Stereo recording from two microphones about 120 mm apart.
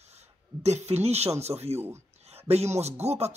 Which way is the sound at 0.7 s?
65° right (ahead or behind).